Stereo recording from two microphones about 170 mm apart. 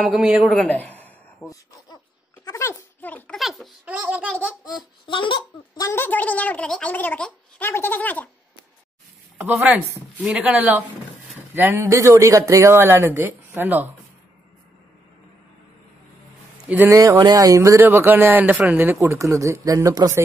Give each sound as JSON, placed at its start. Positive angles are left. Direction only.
{"t": 0.0, "sound": "a man's voice", "side_deg": -5}
{"t": 2.4, "sound": "a sound", "side_deg": 15}
{"t": 4.0, "sound": "speech", "side_deg": -10}
{"t": 5.0, "sound": "a woman's voice", "side_deg": 30}
{"t": 9.4, "sound": "speech", "side_deg": -10}
{"t": 16.6, "sound": "speech", "side_deg": -10}